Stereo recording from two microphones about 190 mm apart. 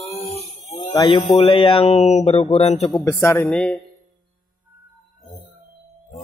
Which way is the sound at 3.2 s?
10° left (ahead or behind).